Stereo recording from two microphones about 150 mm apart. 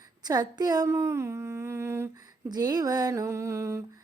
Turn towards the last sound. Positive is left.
turn(degrees=-20)  # may be behind; listen again after turning